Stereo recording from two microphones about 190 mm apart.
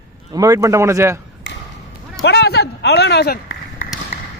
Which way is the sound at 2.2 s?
60° left (ahead or behind).